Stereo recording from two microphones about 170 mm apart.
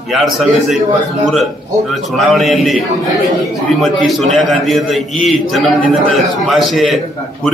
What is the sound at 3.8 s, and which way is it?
A man's voice, centre (ahead or behind).